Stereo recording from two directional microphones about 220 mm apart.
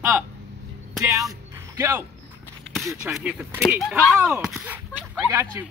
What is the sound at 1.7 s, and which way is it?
Speech, 15° right (ahead or behind).